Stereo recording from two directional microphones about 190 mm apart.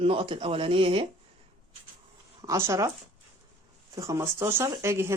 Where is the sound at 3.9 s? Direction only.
15° right (ahead or behind).